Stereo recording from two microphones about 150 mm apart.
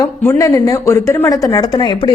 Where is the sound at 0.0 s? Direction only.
20° left (ahead or behind).